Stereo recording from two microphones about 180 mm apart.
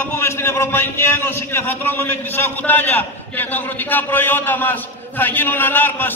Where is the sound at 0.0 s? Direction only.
15° left (ahead or behind).